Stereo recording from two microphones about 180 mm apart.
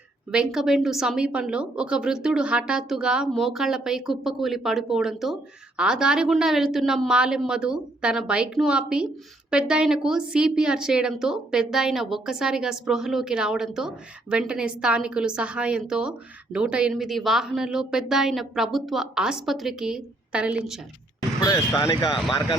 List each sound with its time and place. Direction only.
0.3 s a woman's voice: 5° right (ahead or behind)
21.4 s speech: 20° left (ahead or behind)